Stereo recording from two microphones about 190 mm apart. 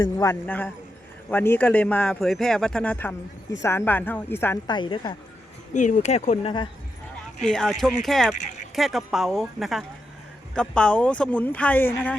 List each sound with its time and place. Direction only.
0.0 s a man's voice: 15° left (ahead or behind)
0.4 s a man's voice: 5° left (ahead or behind)
4.6 s a woman's voice: 25° left (ahead or behind)
5.7 s speech: 40° left (ahead or behind)
7.4 s a man's voice: centre (ahead or behind)